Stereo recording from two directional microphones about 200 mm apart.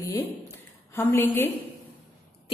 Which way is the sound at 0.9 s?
10° left (ahead or behind).